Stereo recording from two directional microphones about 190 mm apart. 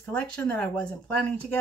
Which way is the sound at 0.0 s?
5° left (ahead or behind).